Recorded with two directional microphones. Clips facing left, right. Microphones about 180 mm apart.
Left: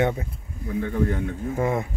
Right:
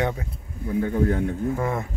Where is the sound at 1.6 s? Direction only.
20° left (ahead or behind).